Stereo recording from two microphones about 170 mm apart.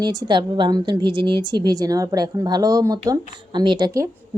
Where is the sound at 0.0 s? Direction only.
25° right (ahead or behind).